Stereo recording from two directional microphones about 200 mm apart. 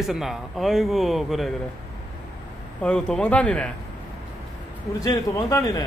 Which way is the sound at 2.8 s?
5° left (ahead or behind).